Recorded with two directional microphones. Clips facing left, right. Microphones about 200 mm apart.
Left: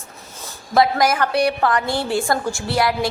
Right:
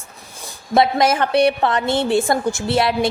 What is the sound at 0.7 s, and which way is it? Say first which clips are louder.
A woman's voice: right 1 dB; 25° right (ahead or behind).